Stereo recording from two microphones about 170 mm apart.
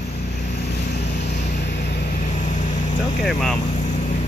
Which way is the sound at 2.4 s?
45° left (ahead or behind).